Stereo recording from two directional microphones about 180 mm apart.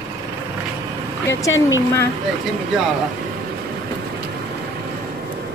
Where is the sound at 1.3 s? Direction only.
15° left (ahead or behind).